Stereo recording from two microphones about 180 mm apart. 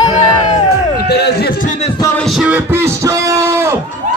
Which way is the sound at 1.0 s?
65° left (ahead or behind).